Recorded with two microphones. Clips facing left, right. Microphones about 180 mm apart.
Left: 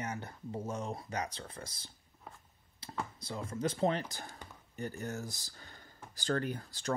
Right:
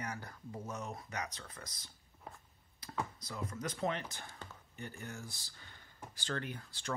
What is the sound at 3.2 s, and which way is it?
Speech, 30° left (ahead or behind).